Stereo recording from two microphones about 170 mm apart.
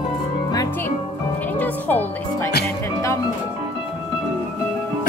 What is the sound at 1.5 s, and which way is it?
Music, 10° left (ahead or behind).